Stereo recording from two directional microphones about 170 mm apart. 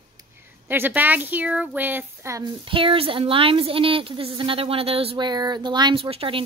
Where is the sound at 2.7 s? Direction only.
30° right (ahead or behind).